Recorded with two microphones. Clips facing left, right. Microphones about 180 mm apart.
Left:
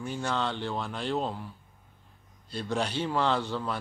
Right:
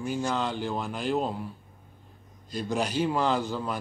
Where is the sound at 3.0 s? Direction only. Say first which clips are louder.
Right 3 dB; 10° right (ahead or behind).